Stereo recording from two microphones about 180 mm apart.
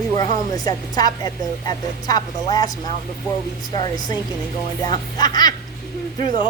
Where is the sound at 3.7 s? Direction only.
25° left (ahead or behind).